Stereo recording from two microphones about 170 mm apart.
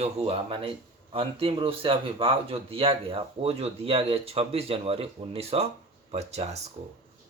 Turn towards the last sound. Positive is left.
turn(degrees=-40)  # may be behind; listen again after turning